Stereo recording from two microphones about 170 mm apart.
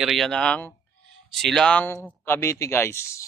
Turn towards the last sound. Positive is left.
turn(degrees=15)  # may be behind; listen again after turning